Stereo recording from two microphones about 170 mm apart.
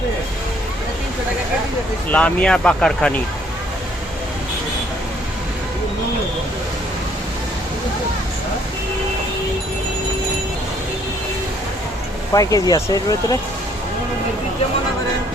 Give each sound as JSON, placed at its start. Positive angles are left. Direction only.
{"t": 2.0, "sound": "speech", "side_deg": 5}
{"t": 12.3, "sound": "speech", "side_deg": 20}